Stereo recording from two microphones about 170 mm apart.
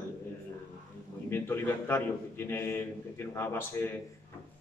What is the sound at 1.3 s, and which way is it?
A man's voice, 15° left (ahead or behind).